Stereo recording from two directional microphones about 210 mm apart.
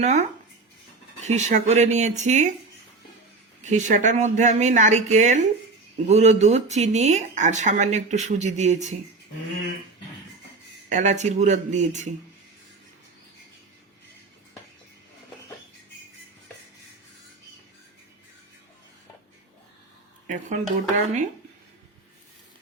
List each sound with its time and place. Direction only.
0.0 s speech: 35° right (ahead or behind)
3.6 s speech: 35° right (ahead or behind)
10.8 s speech: 35° right (ahead or behind)
20.2 s speech: 35° right (ahead or behind)